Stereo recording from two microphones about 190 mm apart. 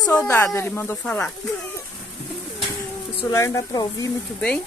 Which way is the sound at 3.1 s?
20° left (ahead or behind).